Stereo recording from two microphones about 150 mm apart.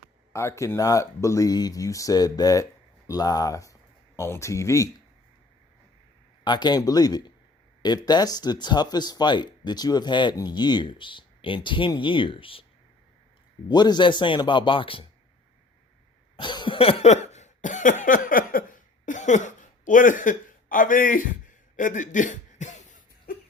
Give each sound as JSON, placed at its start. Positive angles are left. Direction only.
{"t": 0.3, "sound": "speech", "side_deg": 20}
{"t": 6.4, "sound": "speech", "side_deg": 30}
{"t": 13.7, "sound": "speech", "side_deg": 30}
{"t": 16.4, "sound": "cough", "side_deg": 30}